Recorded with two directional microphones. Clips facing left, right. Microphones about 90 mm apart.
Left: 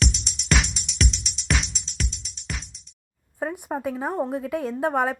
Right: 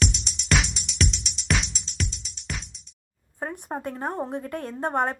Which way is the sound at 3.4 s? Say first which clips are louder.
Left 4 dB; 5° left (ahead or behind).